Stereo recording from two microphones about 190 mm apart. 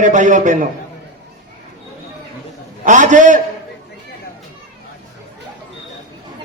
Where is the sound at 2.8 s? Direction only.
40° right (ahead or behind).